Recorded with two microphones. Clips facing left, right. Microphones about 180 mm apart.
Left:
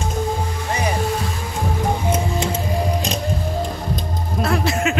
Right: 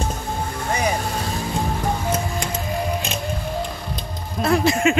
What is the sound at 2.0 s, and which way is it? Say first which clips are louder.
Music: left 3 dB; 20° left (ahead or behind).